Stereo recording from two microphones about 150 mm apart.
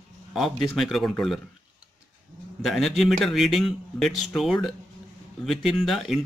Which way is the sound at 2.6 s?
Centre (ahead or behind).